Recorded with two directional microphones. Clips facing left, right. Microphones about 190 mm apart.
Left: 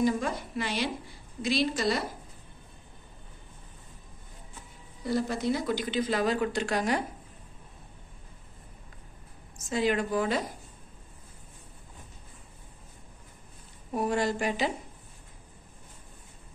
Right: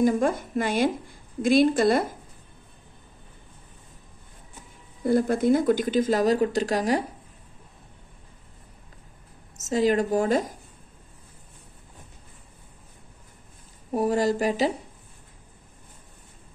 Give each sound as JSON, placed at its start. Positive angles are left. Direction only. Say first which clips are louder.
{"t": 0.0, "sound": "a woman's voice", "louder": "right 6 dB", "side_deg": -50}
{"t": 5.0, "sound": "a woman's voice", "louder": "right 7 dB", "side_deg": -50}
{"t": 9.6, "sound": "a woman's voice", "louder": "right 5 dB", "side_deg": -40}
{"t": 13.9, "sound": "a woman's voice", "louder": "right 5 dB", "side_deg": -40}